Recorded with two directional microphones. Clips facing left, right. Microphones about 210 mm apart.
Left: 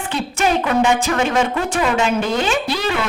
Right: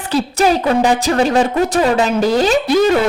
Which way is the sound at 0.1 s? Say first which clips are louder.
Right 5 dB; 35° right (ahead or behind).